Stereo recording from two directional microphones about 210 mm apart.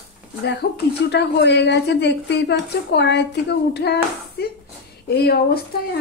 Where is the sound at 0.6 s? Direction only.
45° left (ahead or behind).